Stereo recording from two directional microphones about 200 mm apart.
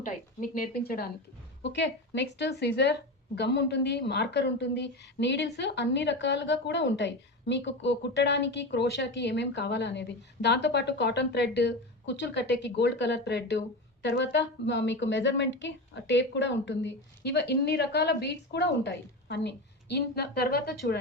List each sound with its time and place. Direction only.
0.0 s a woman's voice: 40° left (ahead or behind)
1.6 s a woman's voice: 60° left (ahead or behind)